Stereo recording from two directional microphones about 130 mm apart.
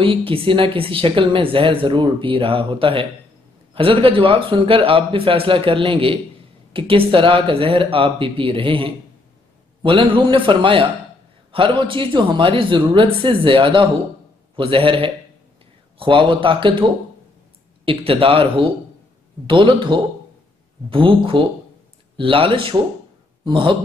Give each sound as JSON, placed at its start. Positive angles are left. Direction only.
{"t": 0.0, "sound": "a man's voice", "side_deg": -45}